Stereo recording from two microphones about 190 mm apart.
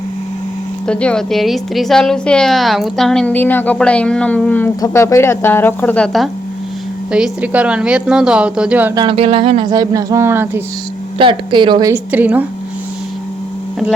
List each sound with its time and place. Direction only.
0.9 s a woman's voice: 5° left (ahead or behind)
9.0 s speech: 30° right (ahead or behind); by 10.6 s 10° right (ahead or behind)
11.2 s speech: 25° right (ahead or behind)
12.1 s speech: 10° right (ahead or behind)